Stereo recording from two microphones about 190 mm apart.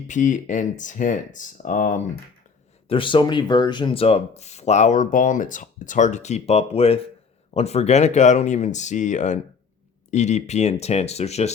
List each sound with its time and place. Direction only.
0.1 s speech: 40° left (ahead or behind)
2.9 s speech: 25° left (ahead or behind)